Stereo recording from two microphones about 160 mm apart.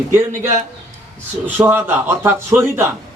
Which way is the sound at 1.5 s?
10° right (ahead or behind).